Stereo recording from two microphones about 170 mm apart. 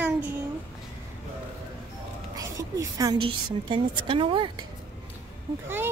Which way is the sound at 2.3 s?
20° right (ahead or behind).